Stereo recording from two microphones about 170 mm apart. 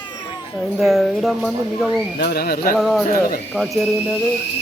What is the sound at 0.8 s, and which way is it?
Speech, centre (ahead or behind).